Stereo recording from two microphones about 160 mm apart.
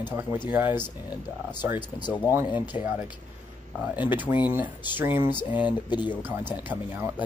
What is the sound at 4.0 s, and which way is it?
Speech, 10° right (ahead or behind).